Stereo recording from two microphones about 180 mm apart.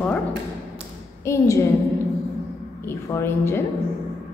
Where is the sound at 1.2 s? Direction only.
15° left (ahead or behind).